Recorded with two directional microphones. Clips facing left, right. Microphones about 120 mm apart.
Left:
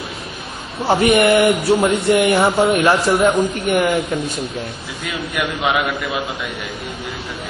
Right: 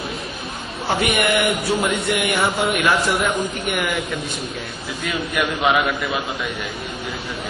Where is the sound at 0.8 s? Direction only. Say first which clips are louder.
Left 7 dB; 35° left (ahead or behind).